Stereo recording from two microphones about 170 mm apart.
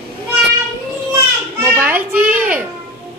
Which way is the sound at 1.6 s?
10° right (ahead or behind).